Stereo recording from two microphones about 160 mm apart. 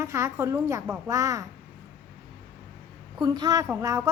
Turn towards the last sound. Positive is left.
turn(degrees=-20)  # may be behind; listen again after turning